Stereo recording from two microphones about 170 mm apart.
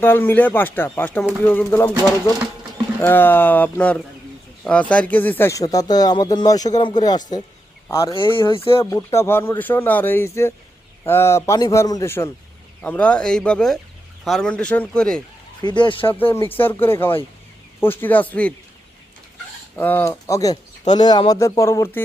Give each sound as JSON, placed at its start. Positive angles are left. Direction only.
{"t": 0.0, "sound": "speech", "side_deg": 10}
{"t": 3.0, "sound": "speech", "side_deg": 10}
{"t": 8.1, "sound": "speech", "side_deg": 30}
{"t": 8.8, "sound": "speech", "side_deg": 20}
{"t": 15.6, "sound": "speech", "side_deg": 25}
{"t": 16.1, "sound": "speech", "side_deg": 15}
{"t": 19.7, "sound": "speech", "side_deg": 10}